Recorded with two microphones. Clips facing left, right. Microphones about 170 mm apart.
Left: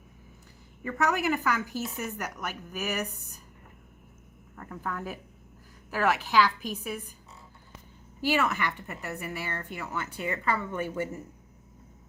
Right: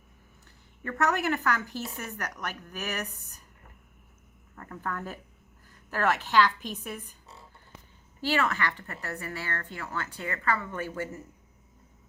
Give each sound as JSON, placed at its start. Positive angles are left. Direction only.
{"t": 0.9, "sound": "a woman's voice", "side_deg": 0}
{"t": 4.5, "sound": "a woman's voice", "side_deg": 5}
{"t": 8.2, "sound": "speech", "side_deg": 10}